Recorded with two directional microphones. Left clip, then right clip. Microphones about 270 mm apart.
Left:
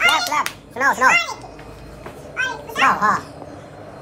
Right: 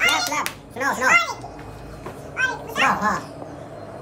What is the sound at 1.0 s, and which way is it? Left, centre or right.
Speech, centre.